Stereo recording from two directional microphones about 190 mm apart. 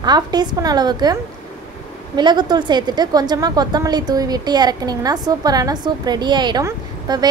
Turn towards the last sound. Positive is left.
turn(degrees=-20)  # may be behind; listen again after turning